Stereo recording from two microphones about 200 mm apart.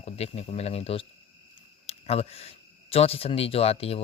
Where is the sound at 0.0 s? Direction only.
30° left (ahead or behind).